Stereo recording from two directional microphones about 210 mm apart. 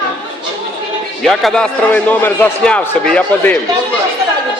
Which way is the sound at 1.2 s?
5° left (ahead or behind).